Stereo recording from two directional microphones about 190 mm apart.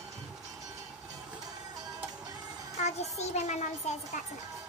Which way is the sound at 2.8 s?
35° left (ahead or behind).